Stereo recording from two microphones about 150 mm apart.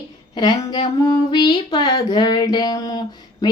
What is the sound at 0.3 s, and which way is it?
Speech, 30° left (ahead or behind).